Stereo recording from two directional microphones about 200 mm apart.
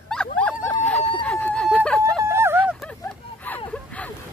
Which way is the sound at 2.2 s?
10° right (ahead or behind).